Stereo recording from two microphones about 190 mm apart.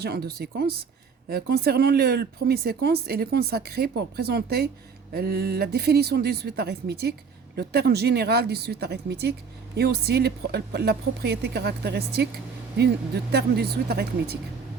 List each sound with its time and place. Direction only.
0.0 s speech: 55° right (ahead or behind)